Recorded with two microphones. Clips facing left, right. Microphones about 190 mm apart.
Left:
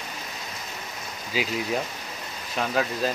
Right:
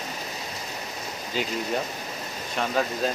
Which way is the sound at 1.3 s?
5° left (ahead or behind).